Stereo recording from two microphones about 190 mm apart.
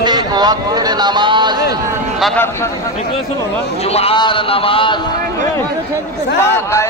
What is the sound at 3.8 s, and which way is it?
A man's voice, 30° left (ahead or behind).